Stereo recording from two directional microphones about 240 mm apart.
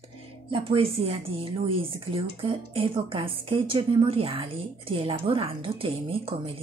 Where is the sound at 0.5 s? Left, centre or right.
Right.